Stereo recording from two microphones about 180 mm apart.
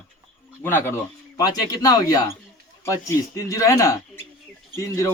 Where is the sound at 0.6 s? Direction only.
15° left (ahead or behind).